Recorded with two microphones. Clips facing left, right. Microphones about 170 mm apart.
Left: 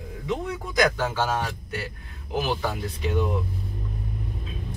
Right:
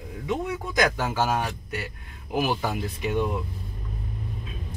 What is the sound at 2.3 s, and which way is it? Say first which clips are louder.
Speech: right 1 dB; 10° right (ahead or behind).